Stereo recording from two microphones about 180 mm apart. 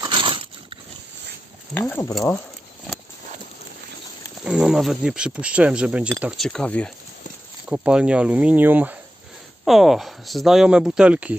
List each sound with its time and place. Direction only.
0.0 s a sound: 25° right (ahead or behind)
1.8 s speech: 15° left (ahead or behind)
4.4 s speech: 5° right (ahead or behind)
7.7 s speech: 5° right (ahead or behind)